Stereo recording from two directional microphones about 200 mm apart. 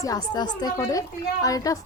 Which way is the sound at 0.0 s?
20° left (ahead or behind).